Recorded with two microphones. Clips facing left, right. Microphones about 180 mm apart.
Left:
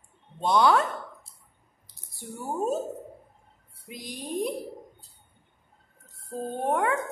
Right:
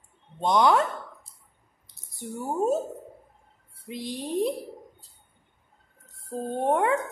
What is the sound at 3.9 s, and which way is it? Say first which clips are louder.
Speech: right 4 dB; 25° right (ahead or behind).